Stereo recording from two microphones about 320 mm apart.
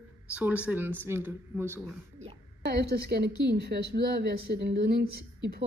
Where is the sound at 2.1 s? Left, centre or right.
Right.